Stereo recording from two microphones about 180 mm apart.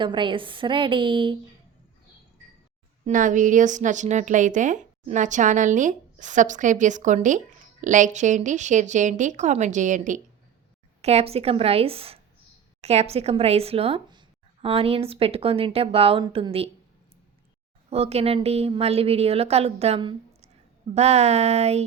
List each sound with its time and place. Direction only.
0.0 s a woman's voice: 25° right (ahead or behind)
3.1 s a woman's voice: 45° right (ahead or behind)
17.8 s speech: 35° right (ahead or behind)